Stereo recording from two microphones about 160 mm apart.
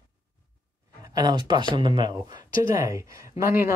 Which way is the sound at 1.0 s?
25° right (ahead or behind).